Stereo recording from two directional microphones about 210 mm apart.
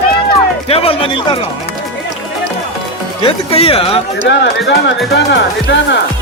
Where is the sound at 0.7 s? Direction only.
25° left (ahead or behind).